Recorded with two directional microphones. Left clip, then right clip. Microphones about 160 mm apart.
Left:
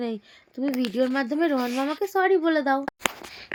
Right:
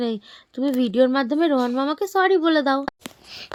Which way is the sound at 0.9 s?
45° right (ahead or behind).